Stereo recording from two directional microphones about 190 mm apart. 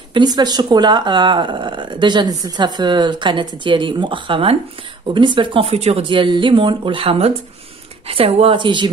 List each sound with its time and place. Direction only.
0.1 s speech: 20° right (ahead or behind)